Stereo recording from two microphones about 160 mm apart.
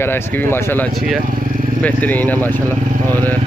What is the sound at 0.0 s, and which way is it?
Speech, 15° left (ahead or behind).